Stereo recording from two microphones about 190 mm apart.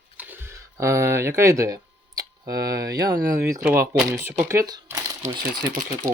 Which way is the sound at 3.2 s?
15° right (ahead or behind).